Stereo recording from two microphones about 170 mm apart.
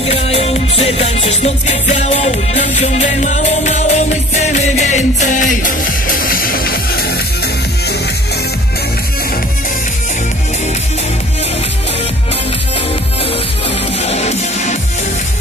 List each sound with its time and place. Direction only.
0.0 s music: 35° left (ahead or behind); by 7.1 s 60° left (ahead or behind)
14.0 s music: 40° left (ahead or behind)